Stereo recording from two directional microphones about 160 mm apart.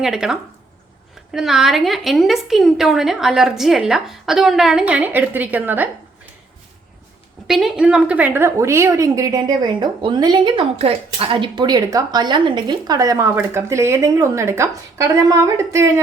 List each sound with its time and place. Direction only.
0.0 s a woman's voice: 5° right (ahead or behind)
7.4 s a woman's voice: centre (ahead or behind); by 15.9 s 20° right (ahead or behind)